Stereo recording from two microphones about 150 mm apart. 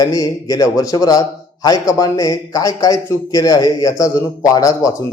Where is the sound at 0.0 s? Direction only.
25° left (ahead or behind).